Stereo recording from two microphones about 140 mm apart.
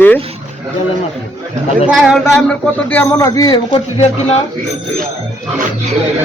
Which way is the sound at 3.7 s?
50° left (ahead or behind).